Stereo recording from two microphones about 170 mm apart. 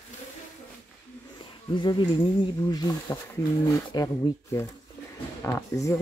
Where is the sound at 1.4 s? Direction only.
30° left (ahead or behind).